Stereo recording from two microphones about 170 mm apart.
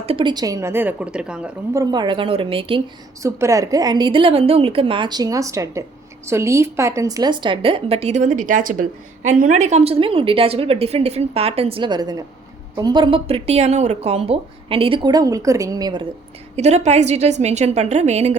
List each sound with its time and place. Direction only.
0.0 s a woman's voice: 35° right (ahead or behind); by 1.5 s 5° right (ahead or behind)
1.7 s speech: 20° right (ahead or behind)
3.2 s a woman's voice: 20° right (ahead or behind)
16.6 s a woman's voice: 40° right (ahead or behind)